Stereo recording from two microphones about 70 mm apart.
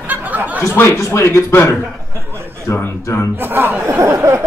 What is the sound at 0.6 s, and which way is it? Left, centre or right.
A man's voice, left.